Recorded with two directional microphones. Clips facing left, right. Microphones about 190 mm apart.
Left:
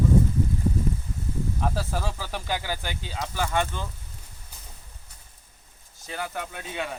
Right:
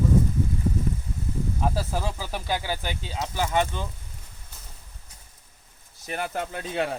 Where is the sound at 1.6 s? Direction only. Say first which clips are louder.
Right 2 dB; 15° right (ahead or behind).